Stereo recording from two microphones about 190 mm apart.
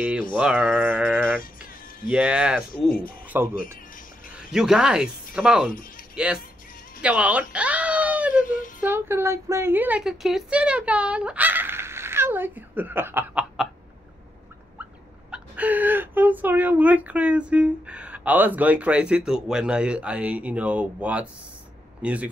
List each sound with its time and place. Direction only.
0.4 s a sound: 5° right (ahead or behind)
2.9 s speech: 50° left (ahead or behind)
4.3 s speech: 5° right (ahead or behind)
7.0 s cat: 5° right (ahead or behind)
8.5 s a sound: 45° left (ahead or behind)
8.8 s speech: 10° right (ahead or behind)
15.3 s speech: 5° right (ahead or behind)